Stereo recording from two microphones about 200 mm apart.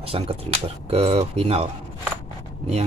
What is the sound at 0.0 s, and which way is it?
Speech, 30° right (ahead or behind).